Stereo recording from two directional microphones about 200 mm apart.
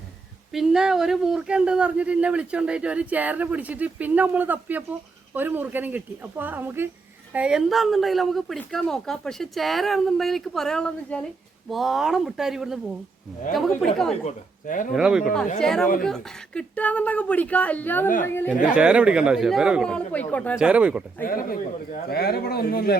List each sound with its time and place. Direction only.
0.5 s a woman's voice: centre (ahead or behind)
14.3 s speech: 40° left (ahead or behind)
14.9 s a woman's voice: 5° right (ahead or behind)
18.7 s a woman's voice: 5° right (ahead or behind)
20.6 s speech: 5° right (ahead or behind)
21.2 s a man's voice: 45° left (ahead or behind)